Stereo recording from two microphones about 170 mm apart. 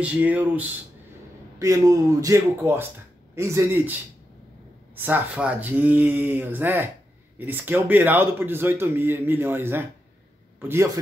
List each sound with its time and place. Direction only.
0.0 s a man's voice: 10° right (ahead or behind)